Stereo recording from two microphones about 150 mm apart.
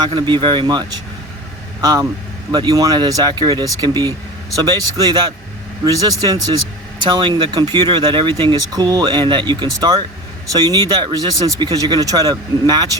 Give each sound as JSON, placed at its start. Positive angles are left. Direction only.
{"t": 0.0, "sound": "speech", "side_deg": -30}